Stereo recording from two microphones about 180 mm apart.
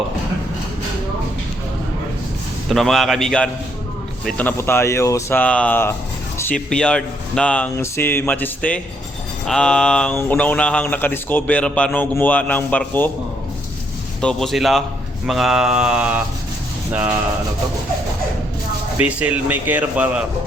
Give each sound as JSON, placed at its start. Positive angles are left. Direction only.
{"t": 2.6, "sound": "mantra", "side_deg": 0}
{"t": 4.3, "sound": "speech", "side_deg": 10}
{"t": 14.2, "sound": "mantra", "side_deg": 5}
{"t": 16.9, "sound": "a man's voice", "side_deg": -5}
{"t": 19.0, "sound": "a man's voice", "side_deg": -10}